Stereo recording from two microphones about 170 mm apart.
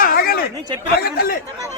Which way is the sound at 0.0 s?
60° left (ahead or behind).